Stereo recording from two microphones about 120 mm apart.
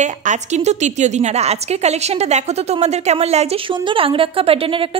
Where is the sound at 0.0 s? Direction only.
90° right.